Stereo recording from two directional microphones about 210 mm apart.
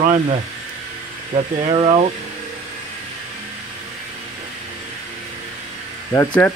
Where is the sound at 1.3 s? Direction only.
30° right (ahead or behind).